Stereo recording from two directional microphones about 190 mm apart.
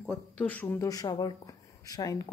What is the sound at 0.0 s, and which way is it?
Speech, 5° left (ahead or behind).